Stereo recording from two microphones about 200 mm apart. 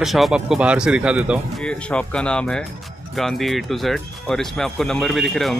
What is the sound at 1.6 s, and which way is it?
Speech, 5° left (ahead or behind).